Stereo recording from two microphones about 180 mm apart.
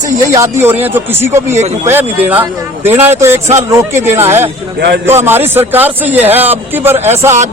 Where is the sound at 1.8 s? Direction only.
10° right (ahead or behind).